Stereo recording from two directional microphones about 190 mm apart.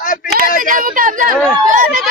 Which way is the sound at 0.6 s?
45° right (ahead or behind).